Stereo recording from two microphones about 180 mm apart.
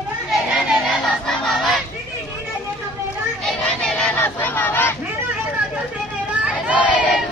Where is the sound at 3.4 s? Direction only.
5° left (ahead or behind).